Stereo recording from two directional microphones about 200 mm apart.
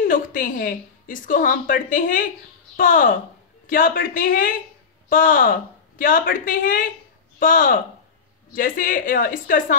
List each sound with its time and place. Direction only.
0.0 s a woman's voice: 45° left (ahead or behind)